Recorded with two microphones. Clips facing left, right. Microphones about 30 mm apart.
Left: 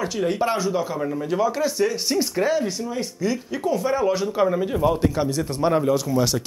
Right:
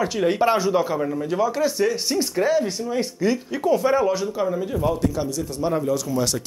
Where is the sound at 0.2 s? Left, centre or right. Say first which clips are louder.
Right 3 dB; centre.